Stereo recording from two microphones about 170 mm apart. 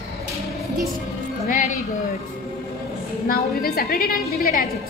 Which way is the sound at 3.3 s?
60° left (ahead or behind).